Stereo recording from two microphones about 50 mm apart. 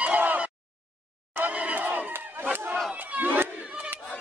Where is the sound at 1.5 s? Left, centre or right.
Right.